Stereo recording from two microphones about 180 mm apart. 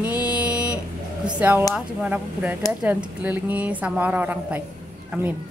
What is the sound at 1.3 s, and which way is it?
Speech, 10° right (ahead or behind).